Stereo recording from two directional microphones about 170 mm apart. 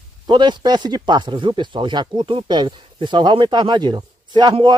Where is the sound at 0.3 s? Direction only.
25° right (ahead or behind).